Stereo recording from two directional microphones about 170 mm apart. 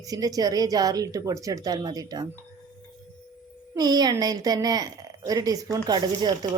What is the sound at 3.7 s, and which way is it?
Speech, 25° right (ahead or behind).